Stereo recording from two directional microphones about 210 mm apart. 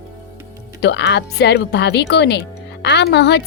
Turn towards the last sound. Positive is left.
turn(degrees=55)  # may be behind; listen again after turning